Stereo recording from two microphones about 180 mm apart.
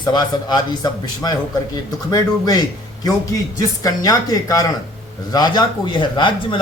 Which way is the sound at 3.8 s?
20° left (ahead or behind).